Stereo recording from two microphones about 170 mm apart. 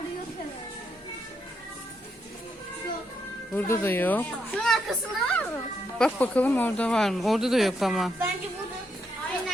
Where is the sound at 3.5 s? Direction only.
10° left (ahead or behind).